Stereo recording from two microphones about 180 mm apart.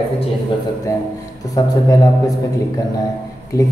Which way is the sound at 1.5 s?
20° left (ahead or behind).